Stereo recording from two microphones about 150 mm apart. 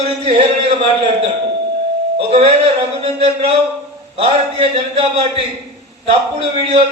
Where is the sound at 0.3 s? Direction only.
40° right (ahead or behind).